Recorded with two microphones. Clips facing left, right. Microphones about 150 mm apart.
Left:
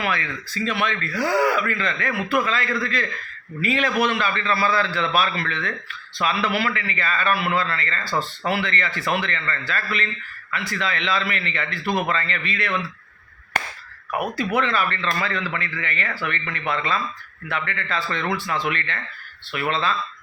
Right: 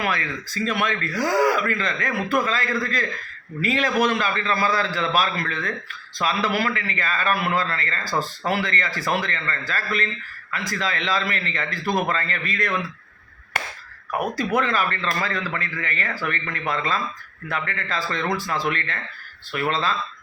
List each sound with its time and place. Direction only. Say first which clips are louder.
0.0 s a man's voice: even; 40° right (ahead or behind)
14.3 s a man's voice: even; 40° right (ahead or behind)